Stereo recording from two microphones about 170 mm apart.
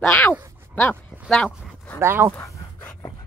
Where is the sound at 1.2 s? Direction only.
5° left (ahead or behind).